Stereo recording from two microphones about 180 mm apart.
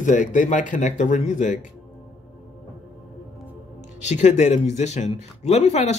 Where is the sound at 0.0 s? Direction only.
45° left (ahead or behind).